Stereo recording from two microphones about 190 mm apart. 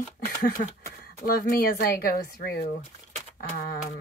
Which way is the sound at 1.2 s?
55° left (ahead or behind).